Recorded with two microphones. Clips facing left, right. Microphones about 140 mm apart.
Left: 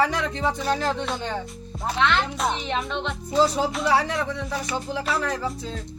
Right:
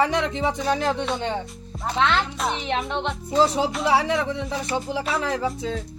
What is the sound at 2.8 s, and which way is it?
Music, 20° right (ahead or behind).